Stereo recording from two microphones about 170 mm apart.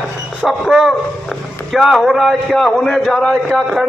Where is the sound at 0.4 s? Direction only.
Centre (ahead or behind).